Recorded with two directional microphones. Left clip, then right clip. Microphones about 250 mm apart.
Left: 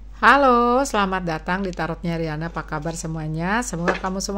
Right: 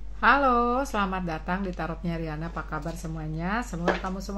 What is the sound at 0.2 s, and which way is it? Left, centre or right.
A woman's voice, left.